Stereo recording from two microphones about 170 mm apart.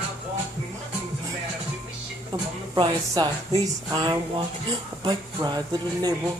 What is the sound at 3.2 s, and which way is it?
Speech, 25° right (ahead or behind).